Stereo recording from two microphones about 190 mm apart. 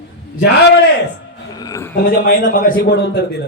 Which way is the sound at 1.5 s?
20° left (ahead or behind).